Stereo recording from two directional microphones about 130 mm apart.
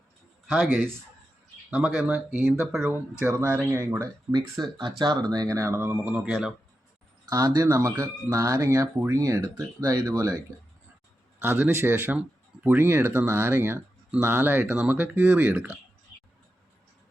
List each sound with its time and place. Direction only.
0.7 s speech: 15° right (ahead or behind)
4.3 s speech: 30° right (ahead or behind); by 6.2 s 15° right (ahead or behind)
7.3 s speech: 25° right (ahead or behind)
11.3 s speech: 15° right (ahead or behind)